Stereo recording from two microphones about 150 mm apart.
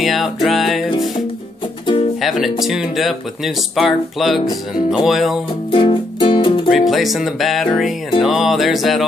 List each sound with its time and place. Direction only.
0.0 s music: centre (ahead or behind)
2.2 s music: centre (ahead or behind)
2.6 s speech: 5° right (ahead or behind)
5.7 s music: 35° left (ahead or behind)
6.7 s speech: centre (ahead or behind)